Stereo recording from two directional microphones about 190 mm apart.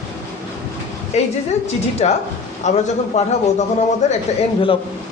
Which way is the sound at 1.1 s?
35° left (ahead or behind).